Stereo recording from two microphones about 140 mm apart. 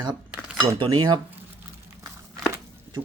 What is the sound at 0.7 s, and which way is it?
Speech, 35° right (ahead or behind).